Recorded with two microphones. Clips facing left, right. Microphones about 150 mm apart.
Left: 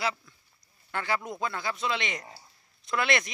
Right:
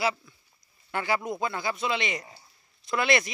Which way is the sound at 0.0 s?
10° right (ahead or behind).